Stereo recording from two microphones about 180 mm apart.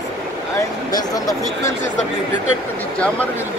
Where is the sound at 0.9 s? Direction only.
20° left (ahead or behind).